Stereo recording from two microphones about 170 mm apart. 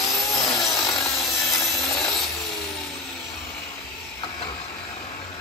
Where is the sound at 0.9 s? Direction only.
Centre (ahead or behind).